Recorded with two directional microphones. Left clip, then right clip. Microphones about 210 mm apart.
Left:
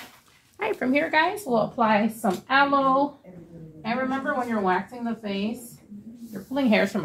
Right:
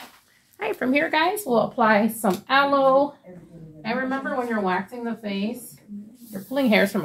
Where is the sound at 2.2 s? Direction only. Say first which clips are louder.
Right 1 dB; 45° right (ahead or behind).